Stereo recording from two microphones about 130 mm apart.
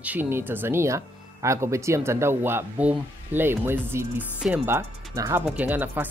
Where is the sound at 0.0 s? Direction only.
15° right (ahead or behind).